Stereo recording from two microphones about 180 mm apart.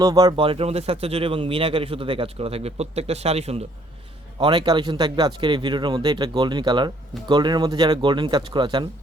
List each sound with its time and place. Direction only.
0.0 s speech: 20° right (ahead or behind)